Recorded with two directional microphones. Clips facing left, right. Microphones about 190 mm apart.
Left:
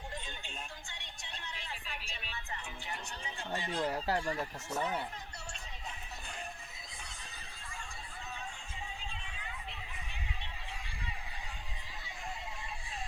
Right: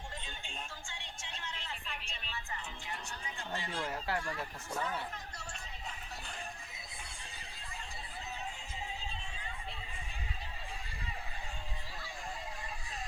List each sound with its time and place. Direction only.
3.5 s speech: 15° left (ahead or behind)
3.8 s speech: 35° left (ahead or behind)
4.3 s speech: 20° left (ahead or behind)